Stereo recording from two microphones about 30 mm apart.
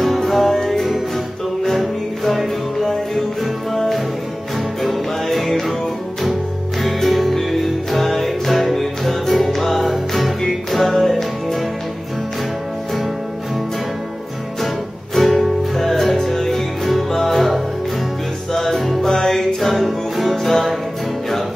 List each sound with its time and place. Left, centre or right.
0.3 s music: centre
0.6 s music: centre
2.2 s music: centre
5.5 s music: centre
6.8 s music: centre
15.1 s music: centre
18.5 s music: centre
19.0 s music: centre
19.3 s music: centre